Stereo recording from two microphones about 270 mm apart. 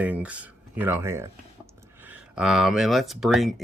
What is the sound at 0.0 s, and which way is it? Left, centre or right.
Speech, centre.